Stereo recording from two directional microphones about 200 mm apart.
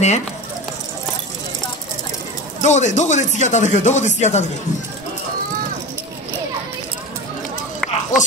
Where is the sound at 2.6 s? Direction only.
35° left (ahead or behind).